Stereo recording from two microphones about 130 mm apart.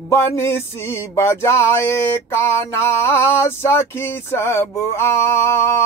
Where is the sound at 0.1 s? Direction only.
20° left (ahead or behind).